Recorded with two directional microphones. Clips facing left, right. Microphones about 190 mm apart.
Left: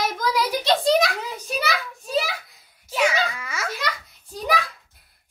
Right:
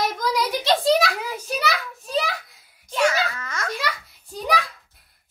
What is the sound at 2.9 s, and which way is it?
Wail, 10° left (ahead or behind).